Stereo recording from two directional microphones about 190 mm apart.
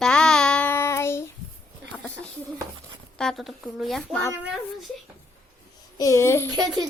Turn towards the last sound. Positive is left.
turn(degrees=-20)  # may be behind; listen again after turning